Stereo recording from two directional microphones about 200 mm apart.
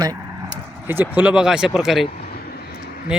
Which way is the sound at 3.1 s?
5° right (ahead or behind).